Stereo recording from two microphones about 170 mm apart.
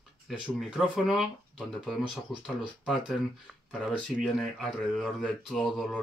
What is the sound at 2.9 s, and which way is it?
Speech, centre (ahead or behind).